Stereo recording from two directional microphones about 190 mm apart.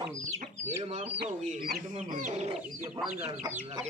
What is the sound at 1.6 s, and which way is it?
Speech, 45° right (ahead or behind).